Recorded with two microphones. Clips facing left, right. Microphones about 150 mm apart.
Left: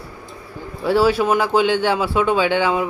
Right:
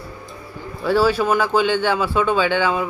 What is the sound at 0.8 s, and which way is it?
Speech, 25° left (ahead or behind).